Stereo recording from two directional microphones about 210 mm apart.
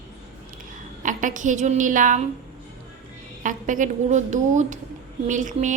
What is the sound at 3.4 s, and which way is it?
A woman's voice, 40° right (ahead or behind).